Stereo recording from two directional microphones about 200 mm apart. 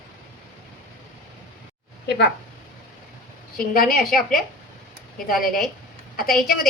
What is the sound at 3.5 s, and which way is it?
A woman's voice, 45° left (ahead or behind).